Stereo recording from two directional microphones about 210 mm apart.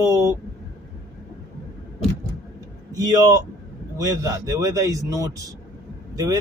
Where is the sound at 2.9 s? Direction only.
15° right (ahead or behind).